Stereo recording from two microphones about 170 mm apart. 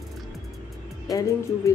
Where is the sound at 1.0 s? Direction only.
20° left (ahead or behind).